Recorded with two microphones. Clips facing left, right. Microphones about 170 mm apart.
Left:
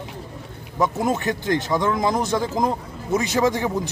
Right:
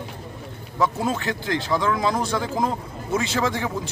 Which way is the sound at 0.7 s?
15° left (ahead or behind).